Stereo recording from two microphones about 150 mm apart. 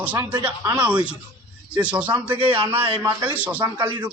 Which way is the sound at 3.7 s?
35° right (ahead or behind).